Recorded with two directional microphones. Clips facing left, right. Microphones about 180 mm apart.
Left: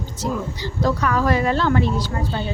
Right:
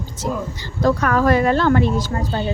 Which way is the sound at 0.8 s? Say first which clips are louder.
Right 4 dB; 50° right (ahead or behind).